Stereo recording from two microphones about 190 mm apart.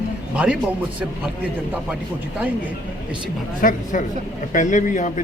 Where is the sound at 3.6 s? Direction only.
45° left (ahead or behind).